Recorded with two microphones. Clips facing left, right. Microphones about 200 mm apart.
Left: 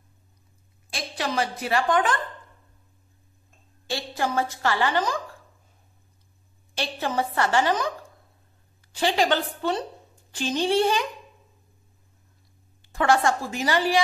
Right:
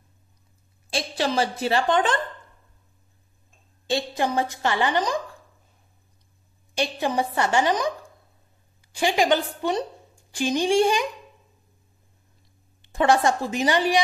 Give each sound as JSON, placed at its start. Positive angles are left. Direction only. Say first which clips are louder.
{"t": 0.8, "sound": "a woman's voice", "louder": "right 5 dB", "side_deg": -30}
{"t": 3.8, "sound": "a woman's voice", "louder": "right 4 dB", "side_deg": -20}
{"t": 6.7, "sound": "a woman's voice", "louder": "right 3 dB", "side_deg": -15}
{"t": 8.9, "sound": "a woman's voice", "louder": "right 2 dB", "side_deg": -15}
{"t": 12.8, "sound": "a woman's voice", "louder": "right 2 dB", "side_deg": -20}